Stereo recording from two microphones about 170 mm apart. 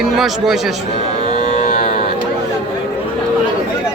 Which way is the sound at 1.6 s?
40° left (ahead or behind).